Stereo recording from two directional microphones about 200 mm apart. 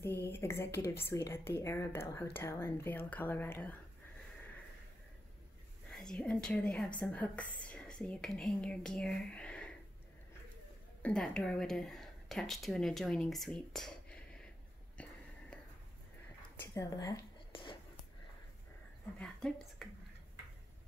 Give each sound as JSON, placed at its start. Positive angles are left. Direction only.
{"t": 0.0, "sound": "a woman's voice", "side_deg": 10}
{"t": 5.9, "sound": "a woman's voice", "side_deg": 5}
{"t": 11.0, "sound": "a woman's voice", "side_deg": 5}
{"t": 15.0, "sound": "a sound", "side_deg": 5}
{"t": 16.5, "sound": "a sound", "side_deg": 15}
{"t": 19.1, "sound": "speech", "side_deg": 0}